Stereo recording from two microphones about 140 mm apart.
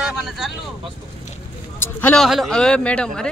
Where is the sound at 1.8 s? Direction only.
15° left (ahead or behind).